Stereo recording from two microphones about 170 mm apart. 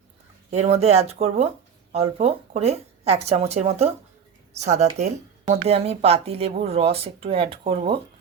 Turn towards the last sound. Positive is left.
turn(degrees=-35)  # may be behind; listen again after turning